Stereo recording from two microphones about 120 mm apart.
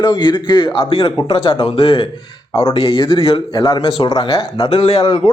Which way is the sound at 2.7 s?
50° left (ahead or behind).